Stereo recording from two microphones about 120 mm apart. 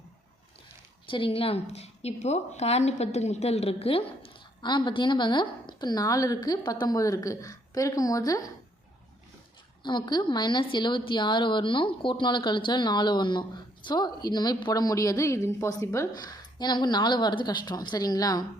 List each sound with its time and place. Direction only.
1.1 s a woman's voice: 50° left (ahead or behind)
4.6 s a woman's voice: 40° left (ahead or behind)
9.8 s a woman's voice: 40° left (ahead or behind)